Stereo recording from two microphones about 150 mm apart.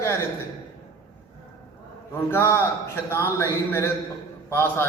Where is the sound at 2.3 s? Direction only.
15° left (ahead or behind).